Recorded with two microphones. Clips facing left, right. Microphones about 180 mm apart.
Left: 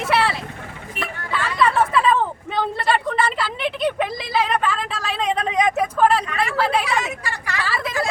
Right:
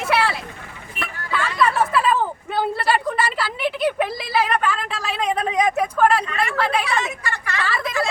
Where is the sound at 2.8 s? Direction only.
5° right (ahead or behind).